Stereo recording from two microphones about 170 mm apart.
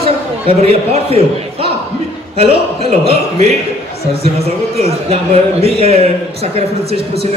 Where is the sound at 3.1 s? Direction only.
40° right (ahead or behind).